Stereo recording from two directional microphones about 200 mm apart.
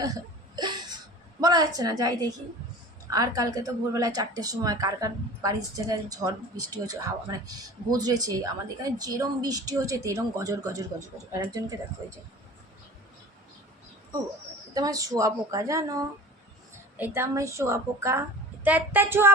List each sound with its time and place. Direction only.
0.0 s hiccup: 20° right (ahead or behind)
1.4 s a woman's voice: 20° right (ahead or behind)
14.7 s a woman's voice: 20° right (ahead or behind)